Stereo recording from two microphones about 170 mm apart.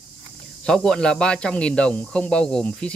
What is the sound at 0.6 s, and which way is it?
Speech, 5° left (ahead or behind).